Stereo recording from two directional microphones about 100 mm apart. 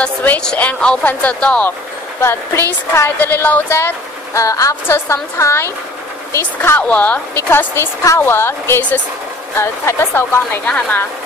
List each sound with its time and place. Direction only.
0.0 s speech: 15° left (ahead or behind)
3.2 s speech: 20° left (ahead or behind)
6.8 s speech: 15° left (ahead or behind)
7.3 s speech: 25° left (ahead or behind)